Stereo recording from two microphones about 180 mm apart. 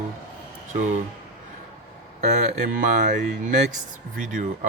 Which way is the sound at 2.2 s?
40° right (ahead or behind).